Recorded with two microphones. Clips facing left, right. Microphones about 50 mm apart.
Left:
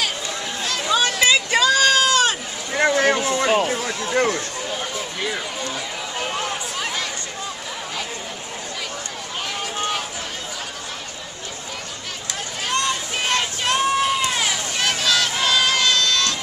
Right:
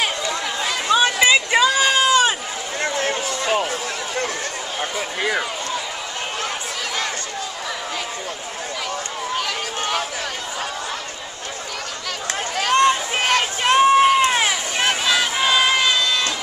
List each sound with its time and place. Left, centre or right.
0.7 s sheep: centre
2.8 s vehicle: left
3.5 s speech: centre
4.1 s speech: left
12.7 s a sound: right